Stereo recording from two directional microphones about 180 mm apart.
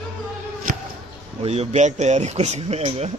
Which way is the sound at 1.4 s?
35° right (ahead or behind).